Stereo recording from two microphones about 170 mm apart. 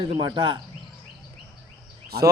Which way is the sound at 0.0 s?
25° right (ahead or behind).